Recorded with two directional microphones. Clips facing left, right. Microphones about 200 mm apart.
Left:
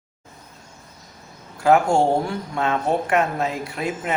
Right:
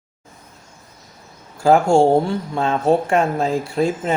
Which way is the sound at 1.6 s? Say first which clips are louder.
Right 4 dB; 30° right (ahead or behind).